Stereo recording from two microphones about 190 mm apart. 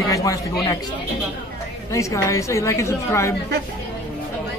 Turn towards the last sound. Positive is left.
turn(degrees=15)  # may be behind; listen again after turning